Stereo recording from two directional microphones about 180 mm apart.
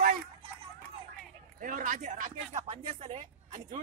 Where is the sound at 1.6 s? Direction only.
50° right (ahead or behind).